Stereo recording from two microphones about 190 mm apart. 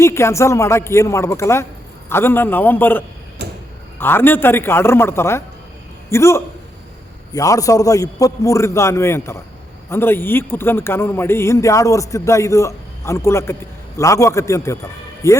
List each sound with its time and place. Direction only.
0.0 s a man's voice: 15° left (ahead or behind)
3.4 s a sound: 60° right (ahead or behind)
3.9 s a man's voice: 10° left (ahead or behind)